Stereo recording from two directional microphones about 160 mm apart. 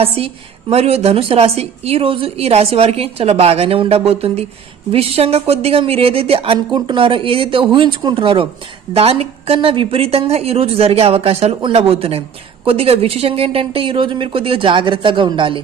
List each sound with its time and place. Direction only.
0.0 s a woman's voice: 40° right (ahead or behind)